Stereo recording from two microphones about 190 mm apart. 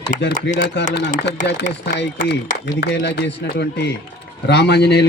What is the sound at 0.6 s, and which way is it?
Speech, 60° left (ahead or behind).